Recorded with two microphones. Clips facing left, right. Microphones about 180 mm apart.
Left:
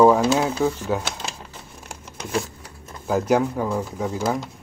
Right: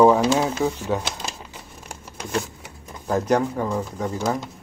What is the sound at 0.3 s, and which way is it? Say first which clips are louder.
A man's voice: left 1 dB; centre (ahead or behind).